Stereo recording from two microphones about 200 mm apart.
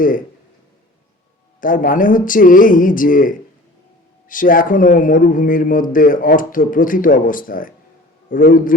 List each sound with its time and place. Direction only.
1.6 s a man's voice: 45° left (ahead or behind)